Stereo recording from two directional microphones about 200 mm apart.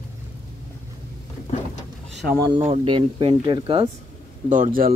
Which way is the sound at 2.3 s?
20° right (ahead or behind).